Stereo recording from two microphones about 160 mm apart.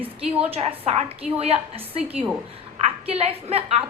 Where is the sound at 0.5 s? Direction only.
40° right (ahead or behind).